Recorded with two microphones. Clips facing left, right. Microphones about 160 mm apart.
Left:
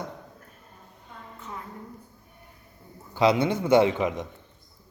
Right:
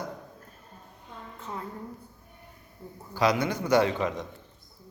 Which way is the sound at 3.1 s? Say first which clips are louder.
Left 4 dB; 25° left (ahead or behind).